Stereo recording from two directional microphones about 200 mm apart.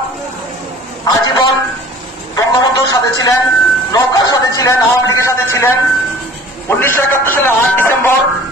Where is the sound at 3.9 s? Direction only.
20° left (ahead or behind).